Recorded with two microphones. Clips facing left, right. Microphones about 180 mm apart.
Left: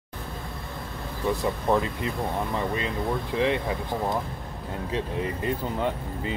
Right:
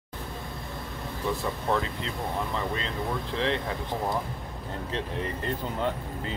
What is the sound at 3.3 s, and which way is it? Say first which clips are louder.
Speech: left 4 dB; 10° left (ahead or behind).